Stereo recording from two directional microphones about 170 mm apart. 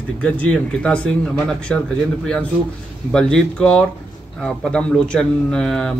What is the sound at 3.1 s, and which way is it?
Speech, 5° left (ahead or behind).